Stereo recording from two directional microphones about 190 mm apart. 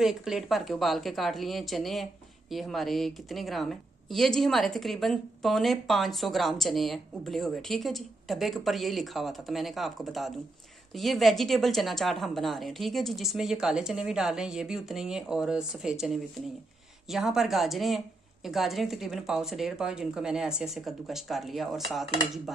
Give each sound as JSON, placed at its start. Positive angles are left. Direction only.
{"t": 0.0, "sound": "a woman's voice", "side_deg": -5}